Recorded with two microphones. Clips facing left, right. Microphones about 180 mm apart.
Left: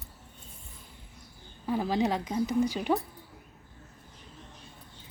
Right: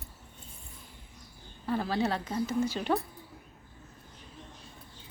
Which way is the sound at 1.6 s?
15° left (ahead or behind).